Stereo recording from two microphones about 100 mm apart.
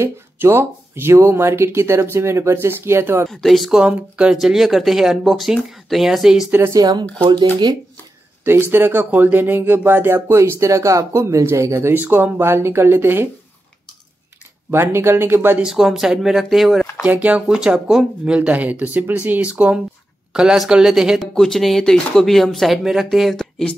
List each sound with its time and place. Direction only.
0.0 s speech: 25° right (ahead or behind)
3.3 s speech: centre (ahead or behind)
6.7 s speech: 40° right (ahead or behind)
8.5 s speech: 20° right (ahead or behind)
14.7 s speech: 25° right (ahead or behind)
15.6 s speech: 5° right (ahead or behind)
17.0 s speech: 15° right (ahead or behind); by 23.7 s 5° left (ahead or behind)